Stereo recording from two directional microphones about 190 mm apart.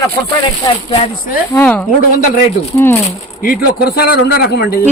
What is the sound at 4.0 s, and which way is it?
Speech, 55° left (ahead or behind).